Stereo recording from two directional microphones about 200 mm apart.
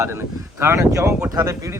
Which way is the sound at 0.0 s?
15° right (ahead or behind).